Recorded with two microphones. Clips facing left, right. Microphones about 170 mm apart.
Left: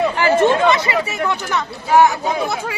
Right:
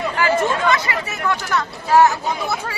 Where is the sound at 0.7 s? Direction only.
20° left (ahead or behind).